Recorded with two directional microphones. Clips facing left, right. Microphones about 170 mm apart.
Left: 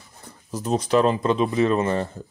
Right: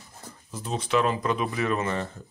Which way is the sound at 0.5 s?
40° left (ahead or behind).